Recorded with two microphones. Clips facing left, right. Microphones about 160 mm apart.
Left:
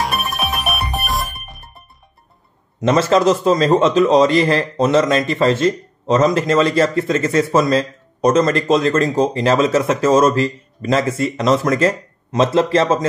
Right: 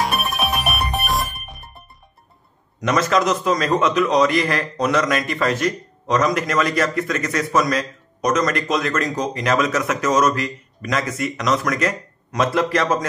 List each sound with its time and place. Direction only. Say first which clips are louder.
0.0 s music: even; centre (ahead or behind)
2.8 s a man's voice: left 5 dB; 30° left (ahead or behind)